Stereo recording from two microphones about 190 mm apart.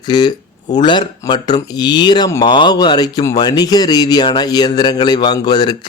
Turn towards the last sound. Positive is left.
turn(degrees=20)  # may be behind; listen again after turning